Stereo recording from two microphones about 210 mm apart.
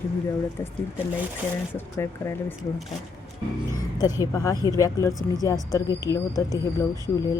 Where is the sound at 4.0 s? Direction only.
20° left (ahead or behind).